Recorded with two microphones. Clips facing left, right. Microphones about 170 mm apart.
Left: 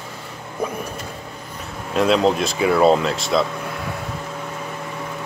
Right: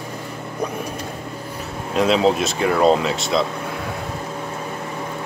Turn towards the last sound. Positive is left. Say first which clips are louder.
# left 1 dB
turn(degrees=0)  # may be behind; listen again after turning